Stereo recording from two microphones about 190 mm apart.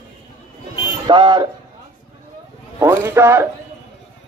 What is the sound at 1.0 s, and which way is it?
Speech, 25° right (ahead or behind).